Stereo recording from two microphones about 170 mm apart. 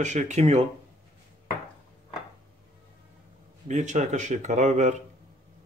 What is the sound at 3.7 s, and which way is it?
Speech, 45° right (ahead or behind).